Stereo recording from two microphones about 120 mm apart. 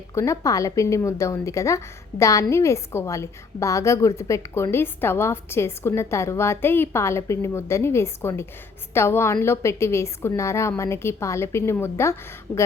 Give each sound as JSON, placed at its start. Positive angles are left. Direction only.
{"t": 0.1, "sound": "a woman's voice", "side_deg": 25}